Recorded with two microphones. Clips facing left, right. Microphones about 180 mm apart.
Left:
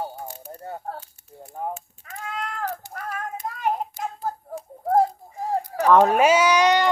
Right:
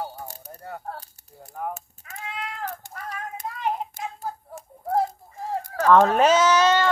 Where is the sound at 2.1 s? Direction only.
45° left (ahead or behind).